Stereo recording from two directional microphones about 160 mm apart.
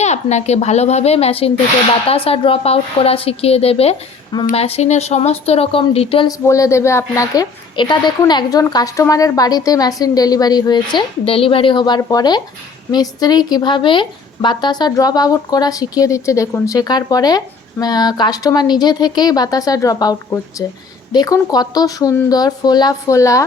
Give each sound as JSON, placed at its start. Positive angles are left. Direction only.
{"t": 0.0, "sound": "speech", "side_deg": 45}
{"t": 6.2, "sound": "a woman's voice", "side_deg": 20}